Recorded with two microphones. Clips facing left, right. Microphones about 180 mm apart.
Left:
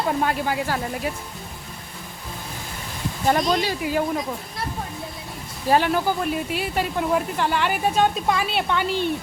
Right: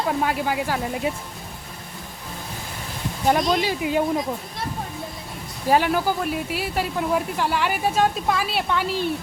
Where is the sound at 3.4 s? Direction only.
Centre (ahead or behind).